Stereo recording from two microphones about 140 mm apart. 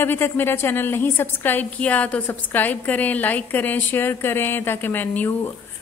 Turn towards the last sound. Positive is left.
turn(degrees=15)  # may be behind; listen again after turning